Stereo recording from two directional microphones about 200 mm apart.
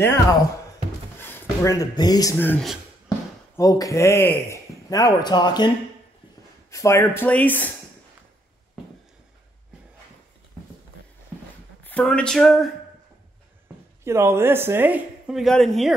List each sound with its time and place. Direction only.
1.1 s a man's voice: 10° left (ahead or behind)
6.7 s a man's voice: 15° left (ahead or behind)
11.8 s speech: 5° left (ahead or behind)
14.0 s speech: 15° right (ahead or behind)